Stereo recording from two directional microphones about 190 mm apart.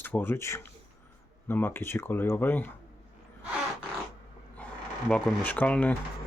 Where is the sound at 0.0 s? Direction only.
10° left (ahead or behind).